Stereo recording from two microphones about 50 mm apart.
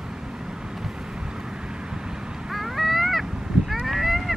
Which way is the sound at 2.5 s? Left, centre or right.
Centre.